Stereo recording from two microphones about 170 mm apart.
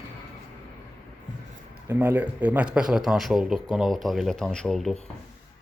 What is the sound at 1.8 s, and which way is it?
Speech, 10° right (ahead or behind).